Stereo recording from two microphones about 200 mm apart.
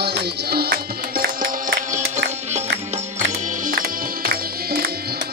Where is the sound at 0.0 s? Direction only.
55° right (ahead or behind).